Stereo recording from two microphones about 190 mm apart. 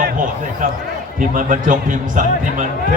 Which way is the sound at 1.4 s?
45° right (ahead or behind).